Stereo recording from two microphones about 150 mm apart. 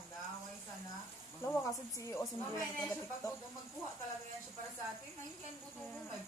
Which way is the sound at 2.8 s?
20° left (ahead or behind).